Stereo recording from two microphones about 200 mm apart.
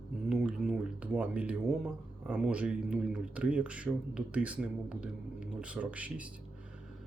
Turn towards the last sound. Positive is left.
turn(degrees=-5)  # may be behind; listen again after turning